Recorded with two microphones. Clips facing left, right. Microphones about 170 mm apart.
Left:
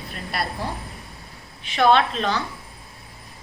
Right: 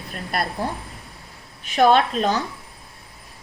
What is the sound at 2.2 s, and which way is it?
Speech, 45° right (ahead or behind).